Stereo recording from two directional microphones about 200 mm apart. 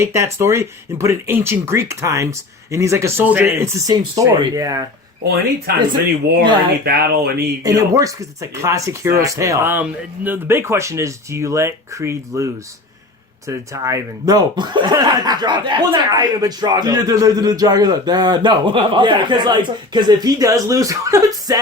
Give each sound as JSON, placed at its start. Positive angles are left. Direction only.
{"t": 0.0, "sound": "speech", "side_deg": -15}
{"t": 5.7, "sound": "speech", "side_deg": -50}
{"t": 7.6, "sound": "speech", "side_deg": -15}
{"t": 13.5, "sound": "speech", "side_deg": -15}